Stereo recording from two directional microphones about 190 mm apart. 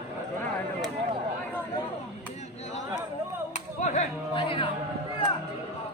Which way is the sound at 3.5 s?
40° left (ahead or behind).